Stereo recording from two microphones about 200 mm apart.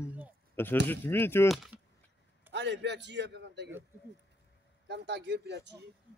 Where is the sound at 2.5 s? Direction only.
60° right (ahead or behind).